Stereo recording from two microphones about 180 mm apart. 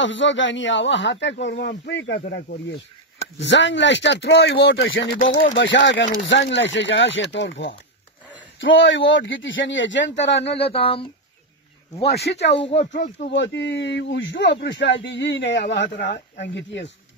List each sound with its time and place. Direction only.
0.0 s speech: 90° left; by 2.6 s 65° left (ahead or behind)
3.2 s speech: 80° left; by 4.6 s 65° left (ahead or behind)
4.6 s speech: 90° left; by 10.6 s 75° left (ahead or behind)
10.6 s speech: 30° left (ahead or behind)
12.1 s speech: 70° left (ahead or behind)